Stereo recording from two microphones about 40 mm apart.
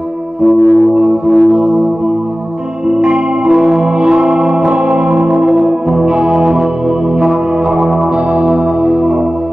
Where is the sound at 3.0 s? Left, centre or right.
Right.